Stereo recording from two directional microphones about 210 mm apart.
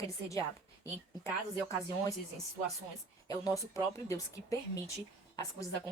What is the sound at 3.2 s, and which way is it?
Speech, 15° left (ahead or behind).